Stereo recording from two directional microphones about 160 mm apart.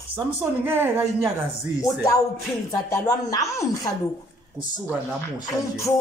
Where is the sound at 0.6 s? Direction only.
15° right (ahead or behind).